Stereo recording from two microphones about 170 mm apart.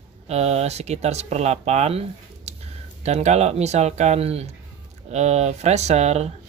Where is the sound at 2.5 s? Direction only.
40° right (ahead or behind).